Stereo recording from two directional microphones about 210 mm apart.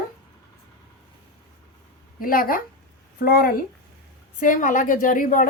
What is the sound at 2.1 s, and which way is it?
A woman's voice, 45° left (ahead or behind).